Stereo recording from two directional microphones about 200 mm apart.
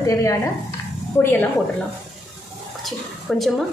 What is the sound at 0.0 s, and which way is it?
Speech, 15° left (ahead or behind).